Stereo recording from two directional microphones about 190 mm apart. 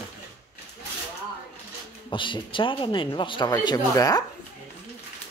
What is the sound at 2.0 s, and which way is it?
Speech, 25° left (ahead or behind).